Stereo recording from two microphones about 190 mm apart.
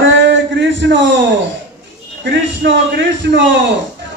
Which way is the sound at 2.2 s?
75° right (ahead or behind).